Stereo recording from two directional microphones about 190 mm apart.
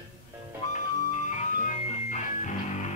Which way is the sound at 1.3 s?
40° left (ahead or behind).